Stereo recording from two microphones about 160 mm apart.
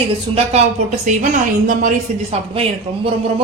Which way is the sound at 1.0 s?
50° right (ahead or behind).